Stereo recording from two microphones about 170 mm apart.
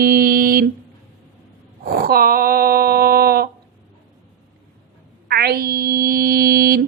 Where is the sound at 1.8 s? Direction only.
60° right (ahead or behind).